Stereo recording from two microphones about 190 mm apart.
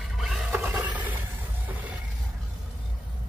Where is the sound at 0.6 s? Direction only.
15° right (ahead or behind).